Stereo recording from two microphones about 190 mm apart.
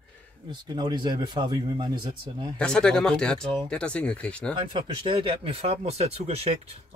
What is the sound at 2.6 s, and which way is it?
Speech, 5° left (ahead or behind).